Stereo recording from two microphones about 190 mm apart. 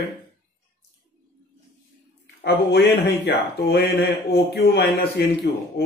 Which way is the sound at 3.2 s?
60° left (ahead or behind).